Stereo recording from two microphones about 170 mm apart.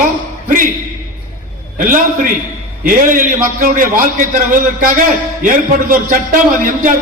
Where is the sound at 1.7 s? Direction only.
50° right (ahead or behind).